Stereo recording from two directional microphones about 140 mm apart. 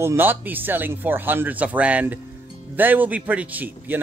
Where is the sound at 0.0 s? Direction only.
15° right (ahead or behind).